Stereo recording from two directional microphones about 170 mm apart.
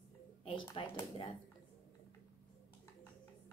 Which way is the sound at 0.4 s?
30° left (ahead or behind).